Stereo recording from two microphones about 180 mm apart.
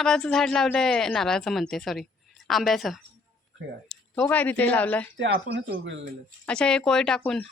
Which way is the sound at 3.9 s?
10° left (ahead or behind).